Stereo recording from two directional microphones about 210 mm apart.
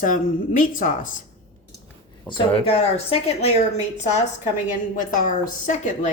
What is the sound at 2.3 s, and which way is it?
Speech, 25° left (ahead or behind).